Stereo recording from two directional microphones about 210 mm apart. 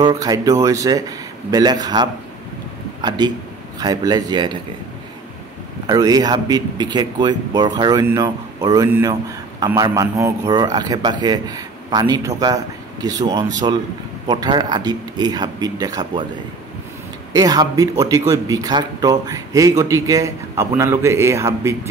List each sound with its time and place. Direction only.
0.0 s a man's voice: 20° right (ahead or behind)
5.9 s a man's voice: 15° right (ahead or behind)
17.3 s a man's voice: 15° right (ahead or behind)